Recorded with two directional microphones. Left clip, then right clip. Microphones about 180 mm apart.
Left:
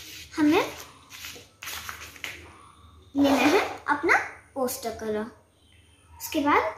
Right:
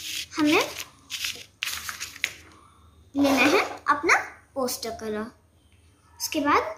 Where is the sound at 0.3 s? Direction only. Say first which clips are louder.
Even; 15° right (ahead or behind).